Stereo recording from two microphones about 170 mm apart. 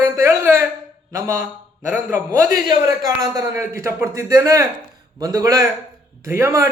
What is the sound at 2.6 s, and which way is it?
A man's voice, 25° right (ahead or behind).